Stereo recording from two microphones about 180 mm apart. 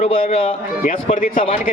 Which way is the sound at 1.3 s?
30° left (ahead or behind).